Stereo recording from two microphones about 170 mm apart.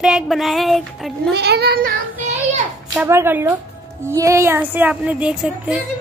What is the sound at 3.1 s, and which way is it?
Speech, 15° right (ahead or behind).